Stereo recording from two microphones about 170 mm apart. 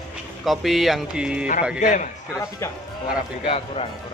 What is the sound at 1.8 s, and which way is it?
Speech, 45° left (ahead or behind).